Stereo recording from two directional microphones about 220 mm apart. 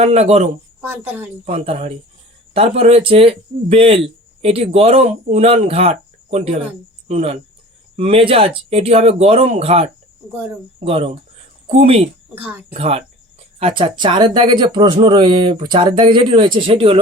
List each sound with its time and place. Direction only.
0.0 s speech: 30° right (ahead or behind)
0.8 s speech: 5° right (ahead or behind)
1.5 s speech: 25° right (ahead or behind)
12.3 s speech: 5° right (ahead or behind)
12.7 s speech: 30° right (ahead or behind)